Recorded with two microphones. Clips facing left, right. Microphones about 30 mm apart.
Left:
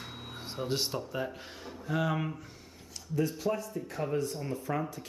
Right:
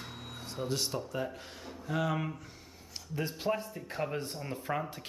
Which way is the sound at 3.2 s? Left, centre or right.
Right.